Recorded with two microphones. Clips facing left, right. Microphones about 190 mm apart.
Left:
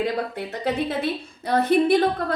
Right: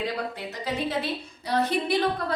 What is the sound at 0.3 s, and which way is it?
A woman's voice, 55° left (ahead or behind).